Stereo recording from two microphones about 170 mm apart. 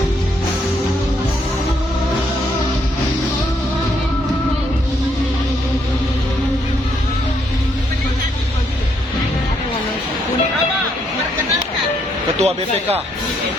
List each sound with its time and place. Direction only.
12.4 s a man's voice: 35° right (ahead or behind)